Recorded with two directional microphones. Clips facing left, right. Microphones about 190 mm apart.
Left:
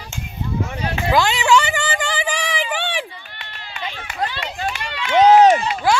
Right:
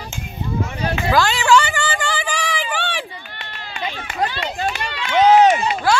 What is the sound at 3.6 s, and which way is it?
Run, 45° right (ahead or behind).